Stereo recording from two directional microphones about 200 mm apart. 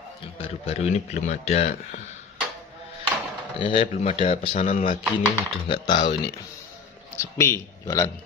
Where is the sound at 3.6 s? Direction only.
25° left (ahead or behind).